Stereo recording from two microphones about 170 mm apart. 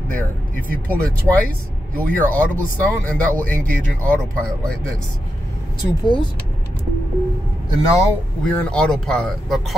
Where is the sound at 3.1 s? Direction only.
10° left (ahead or behind).